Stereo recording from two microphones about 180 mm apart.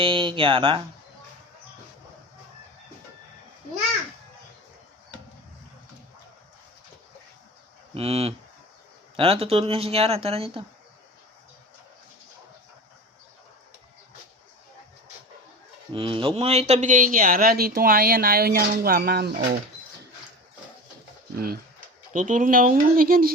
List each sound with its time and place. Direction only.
0.0 s speech: 30° right (ahead or behind)
7.9 s speech: 35° right (ahead or behind)
15.9 s speech: 30° right (ahead or behind); by 19.4 s 60° right (ahead or behind)
21.3 s speech: 55° right (ahead or behind)
22.1 s speech: 45° right (ahead or behind)